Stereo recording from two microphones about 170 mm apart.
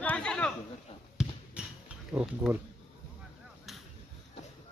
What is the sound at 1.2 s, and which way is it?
Basketball bounce, 5° right (ahead or behind).